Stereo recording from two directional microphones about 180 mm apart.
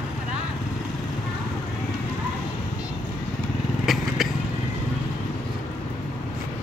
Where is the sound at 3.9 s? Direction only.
Centre (ahead or behind).